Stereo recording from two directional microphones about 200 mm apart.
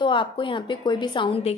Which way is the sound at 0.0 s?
25° left (ahead or behind).